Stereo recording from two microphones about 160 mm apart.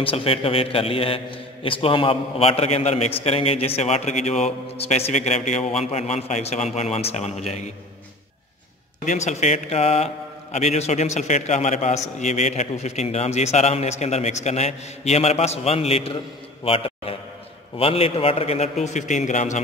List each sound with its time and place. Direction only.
0.0 s a man's voice: 35° left (ahead or behind)
9.0 s a man's voice: 45° left (ahead or behind)